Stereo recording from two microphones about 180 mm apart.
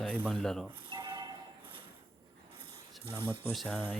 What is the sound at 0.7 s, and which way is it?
Speech, 30° right (ahead or behind).